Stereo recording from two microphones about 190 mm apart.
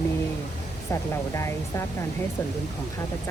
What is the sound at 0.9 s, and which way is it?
Speech, 15° left (ahead or behind).